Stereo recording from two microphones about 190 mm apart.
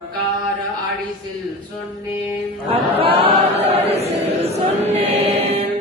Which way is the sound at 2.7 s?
30° right (ahead or behind).